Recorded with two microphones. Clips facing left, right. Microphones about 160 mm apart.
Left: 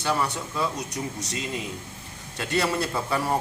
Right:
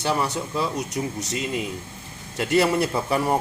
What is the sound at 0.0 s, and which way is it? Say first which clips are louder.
A man's voice: right 2 dB; 25° right (ahead or behind).